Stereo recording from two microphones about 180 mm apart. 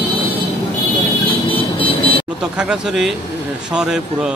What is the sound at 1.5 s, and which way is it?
Vehicle, 30° left (ahead or behind).